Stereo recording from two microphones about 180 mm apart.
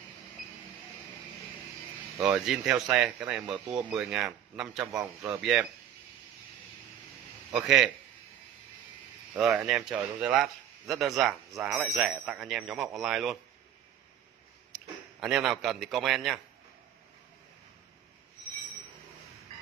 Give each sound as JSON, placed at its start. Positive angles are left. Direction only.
{"t": 2.1, "sound": "speech", "side_deg": -5}
{"t": 5.0, "sound": "a man's voice", "side_deg": -15}
{"t": 5.4, "sound": "speech", "side_deg": -5}
{"t": 7.5, "sound": "speech", "side_deg": -5}
{"t": 9.3, "sound": "speech", "side_deg": -5}
{"t": 15.1, "sound": "speech", "side_deg": 0}